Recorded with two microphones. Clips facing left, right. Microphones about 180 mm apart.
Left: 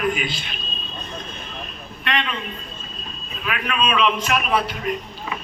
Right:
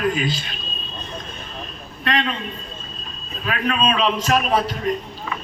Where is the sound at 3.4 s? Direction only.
35° right (ahead or behind).